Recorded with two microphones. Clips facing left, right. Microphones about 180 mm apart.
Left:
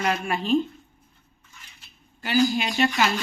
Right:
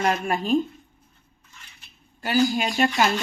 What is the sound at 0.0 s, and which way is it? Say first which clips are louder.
Speech: right 2 dB; 45° right (ahead or behind).